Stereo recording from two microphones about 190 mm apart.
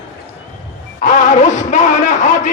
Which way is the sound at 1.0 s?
40° left (ahead or behind).